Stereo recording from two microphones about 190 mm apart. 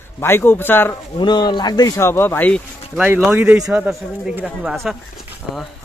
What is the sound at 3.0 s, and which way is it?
Speech, 10° right (ahead or behind).